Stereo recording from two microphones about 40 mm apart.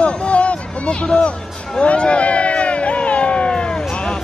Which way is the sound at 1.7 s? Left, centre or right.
Left.